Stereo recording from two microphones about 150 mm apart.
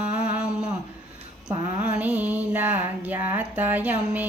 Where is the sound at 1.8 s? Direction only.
10° right (ahead or behind).